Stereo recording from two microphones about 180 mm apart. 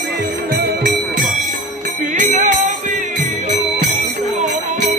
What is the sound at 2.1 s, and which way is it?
Music, 45° right (ahead or behind).